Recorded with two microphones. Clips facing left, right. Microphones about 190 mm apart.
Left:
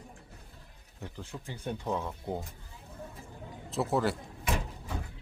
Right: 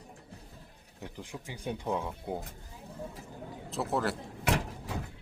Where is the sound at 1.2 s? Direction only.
15° right (ahead or behind).